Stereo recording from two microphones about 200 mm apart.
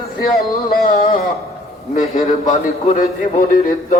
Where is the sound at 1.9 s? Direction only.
40° left (ahead or behind).